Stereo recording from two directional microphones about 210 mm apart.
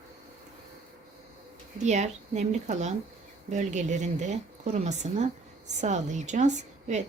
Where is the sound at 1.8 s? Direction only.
35° right (ahead or behind).